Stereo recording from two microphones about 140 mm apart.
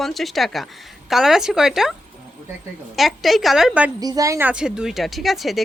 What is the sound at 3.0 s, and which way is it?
Speech, centre (ahead or behind).